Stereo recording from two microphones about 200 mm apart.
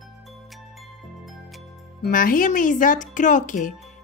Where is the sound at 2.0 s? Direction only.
45° left (ahead or behind).